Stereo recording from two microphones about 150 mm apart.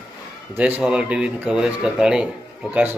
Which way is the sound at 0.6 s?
10° right (ahead or behind).